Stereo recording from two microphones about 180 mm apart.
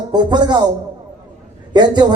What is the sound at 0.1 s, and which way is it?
Speech, 25° right (ahead or behind).